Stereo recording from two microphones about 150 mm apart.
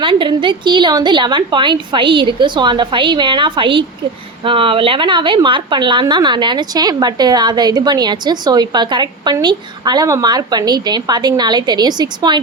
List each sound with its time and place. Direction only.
0.0 s a woman's voice: 35° right (ahead or behind)